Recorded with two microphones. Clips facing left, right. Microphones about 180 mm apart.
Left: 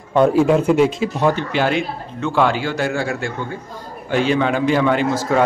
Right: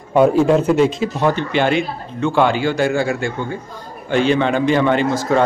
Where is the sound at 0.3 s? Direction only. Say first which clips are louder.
Right 1 dB; 5° left (ahead or behind).